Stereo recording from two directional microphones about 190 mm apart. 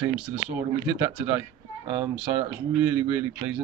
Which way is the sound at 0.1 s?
5° right (ahead or behind).